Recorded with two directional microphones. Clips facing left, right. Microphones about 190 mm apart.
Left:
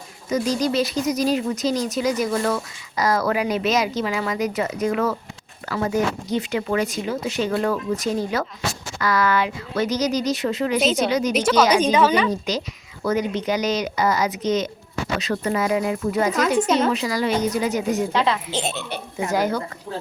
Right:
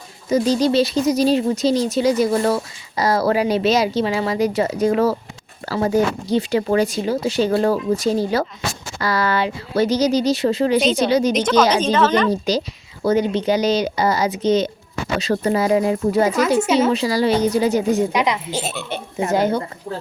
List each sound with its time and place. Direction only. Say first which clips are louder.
0.3 s speech: right 5 dB; 30° right (ahead or behind)
10.8 s speech: right 3 dB; 5° left (ahead or behind)
11.1 s speech: right 5 dB; 30° right (ahead or behind)
11.3 s a woman's voice: right 1 dB; 5° left (ahead or behind)
12.3 s speech: right 5 dB; 30° right (ahead or behind)
16.6 s speech: right 2 dB; 5° right (ahead or behind)
16.9 s speech: right 4 dB; 30° right (ahead or behind)
18.1 s speech: right 1 dB; 15° right (ahead or behind)
18.9 s speech: right 4 dB; 25° right (ahead or behind)